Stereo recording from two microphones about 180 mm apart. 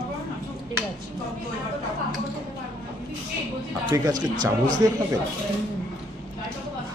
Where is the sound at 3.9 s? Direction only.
20° right (ahead or behind).